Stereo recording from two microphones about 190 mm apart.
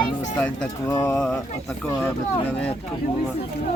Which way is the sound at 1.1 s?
5° left (ahead or behind).